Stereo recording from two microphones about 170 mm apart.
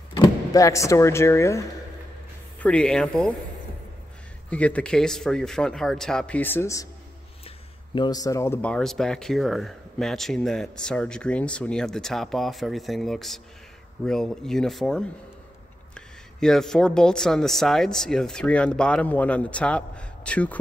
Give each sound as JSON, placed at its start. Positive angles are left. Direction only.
{"t": 0.2, "sound": "speech", "side_deg": 20}
{"t": 2.6, "sound": "speech", "side_deg": 5}
{"t": 4.5, "sound": "speech", "side_deg": 10}
{"t": 7.4, "sound": "speech", "side_deg": 25}